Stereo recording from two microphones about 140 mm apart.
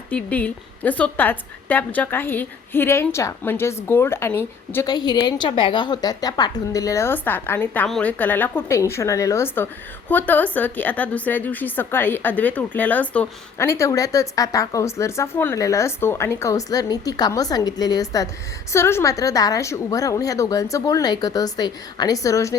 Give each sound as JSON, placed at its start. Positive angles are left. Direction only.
{"t": 0.1, "sound": "a woman's voice", "side_deg": 10}
{"t": 4.9, "sound": "a woman's voice", "side_deg": 30}